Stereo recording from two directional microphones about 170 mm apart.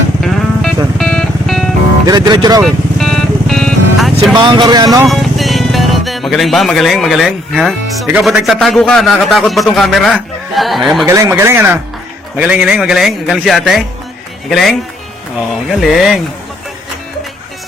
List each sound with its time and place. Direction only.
0.2 s vehicle: centre (ahead or behind)
0.9 s music: 5° left (ahead or behind)
2.0 s speech: 25° right (ahead or behind)
2.6 s music: centre (ahead or behind)
4.4 s speech: 25° right (ahead or behind)
5.0 s a man's voice: centre (ahead or behind)
11.1 s a man's voice: 15° right (ahead or behind); by 14.8 s centre (ahead or behind)
15.8 s a man's voice: centre (ahead or behind)